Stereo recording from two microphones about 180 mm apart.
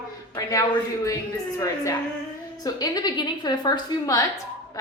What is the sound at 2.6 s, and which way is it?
A woman's voice, 20° left (ahead or behind).